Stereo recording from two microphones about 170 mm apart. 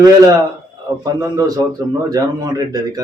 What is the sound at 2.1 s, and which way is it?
Speech, 20° right (ahead or behind).